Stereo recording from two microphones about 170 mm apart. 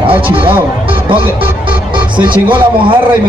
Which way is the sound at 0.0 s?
30° right (ahead or behind).